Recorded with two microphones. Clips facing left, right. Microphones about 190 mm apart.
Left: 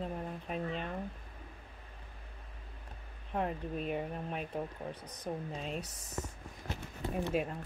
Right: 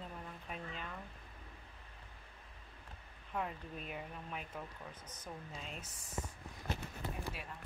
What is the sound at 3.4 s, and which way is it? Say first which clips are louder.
Speech: left 7 dB; 50° left (ahead or behind).